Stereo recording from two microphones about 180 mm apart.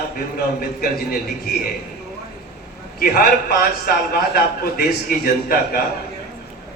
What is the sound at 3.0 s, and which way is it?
A man's voice, 55° left (ahead or behind).